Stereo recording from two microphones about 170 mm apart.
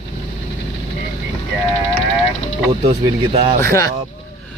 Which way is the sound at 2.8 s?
35° right (ahead or behind).